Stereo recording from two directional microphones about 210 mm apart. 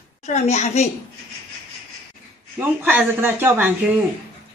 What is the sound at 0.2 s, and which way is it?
Speech, 30° left (ahead or behind).